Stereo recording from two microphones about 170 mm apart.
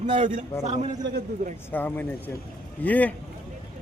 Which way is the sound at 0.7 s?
45° right (ahead or behind).